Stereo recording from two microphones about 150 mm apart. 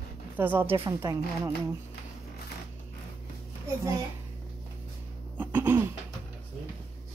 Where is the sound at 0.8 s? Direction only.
25° right (ahead or behind).